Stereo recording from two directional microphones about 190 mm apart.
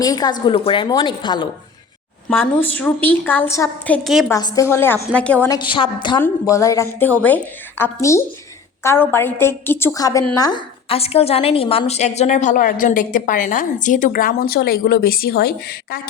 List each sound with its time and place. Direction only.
0.0 s a woman's voice: 20° left (ahead or behind)
2.6 s a woman's voice: 10° left (ahead or behind)
4.3 s a woman's voice: 20° left (ahead or behind)
5.7 s a woman's voice: 25° left (ahead or behind); by 16.0 s 55° left (ahead or behind)